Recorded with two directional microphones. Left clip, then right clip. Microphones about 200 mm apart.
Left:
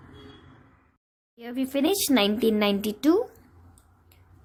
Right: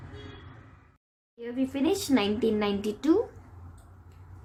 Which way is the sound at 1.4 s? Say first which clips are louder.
Left 3 dB; 50° left (ahead or behind).